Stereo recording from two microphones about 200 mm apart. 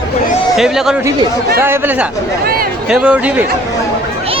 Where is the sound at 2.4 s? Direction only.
50° right (ahead or behind).